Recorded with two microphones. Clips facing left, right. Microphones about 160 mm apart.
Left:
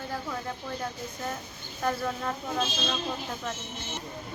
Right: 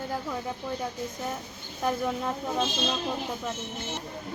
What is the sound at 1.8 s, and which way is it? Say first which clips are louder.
Speech: right 2 dB; 15° right (ahead or behind).